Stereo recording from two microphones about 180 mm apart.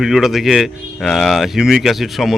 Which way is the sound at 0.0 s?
Centre (ahead or behind).